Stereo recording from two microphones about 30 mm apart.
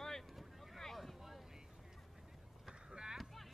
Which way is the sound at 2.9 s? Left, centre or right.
Right.